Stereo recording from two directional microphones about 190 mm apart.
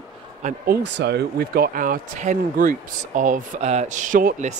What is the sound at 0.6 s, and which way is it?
Speech, 65° right (ahead or behind).